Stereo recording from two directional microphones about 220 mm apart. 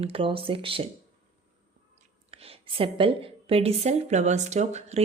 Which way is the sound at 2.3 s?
25° right (ahead or behind).